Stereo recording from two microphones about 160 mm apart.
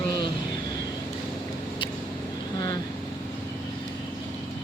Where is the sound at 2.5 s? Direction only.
25° left (ahead or behind).